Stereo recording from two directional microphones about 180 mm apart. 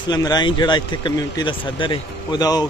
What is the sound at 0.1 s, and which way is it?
A man's voice, 25° left (ahead or behind).